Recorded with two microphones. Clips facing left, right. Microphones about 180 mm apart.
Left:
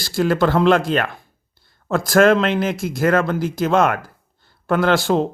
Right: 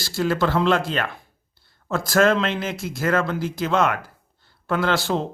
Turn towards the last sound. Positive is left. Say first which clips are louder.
# left 5 dB
turn(degrees=50)  # may be behind; listen again after turning